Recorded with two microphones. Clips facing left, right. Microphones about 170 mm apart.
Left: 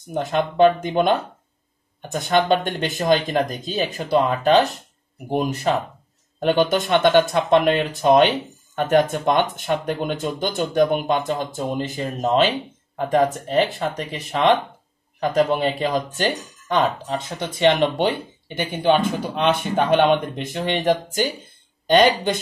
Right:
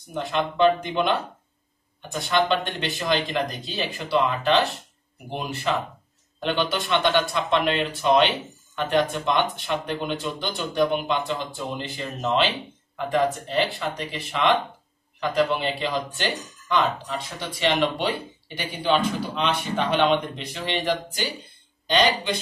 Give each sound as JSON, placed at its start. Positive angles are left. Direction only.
{"t": 0.1, "sound": "speech", "side_deg": 45}
{"t": 2.1, "sound": "speech", "side_deg": 45}